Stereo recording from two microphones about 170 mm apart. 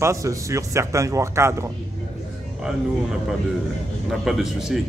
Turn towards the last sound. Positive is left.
turn(degrees=0)  # may be behind; listen again after turning